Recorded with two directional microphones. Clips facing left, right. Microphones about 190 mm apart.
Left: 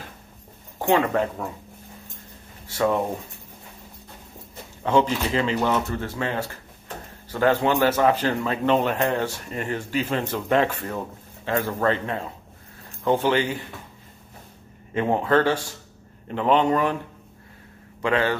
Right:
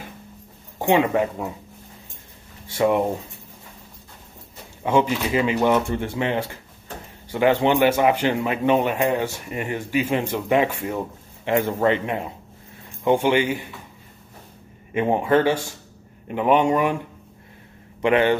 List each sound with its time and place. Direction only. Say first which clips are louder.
0.7 s a man's voice: right 2 dB; 15° right (ahead or behind)
4.8 s a man's voice: right 1 dB; 10° right (ahead or behind)
15.0 s a man's voice: right 2 dB; 15° right (ahead or behind)
18.0 s speech: right 4 dB; 20° right (ahead or behind)